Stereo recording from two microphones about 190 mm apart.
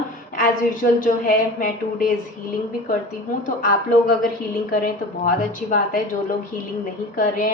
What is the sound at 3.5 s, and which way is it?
A woman's voice, 45° left (ahead or behind).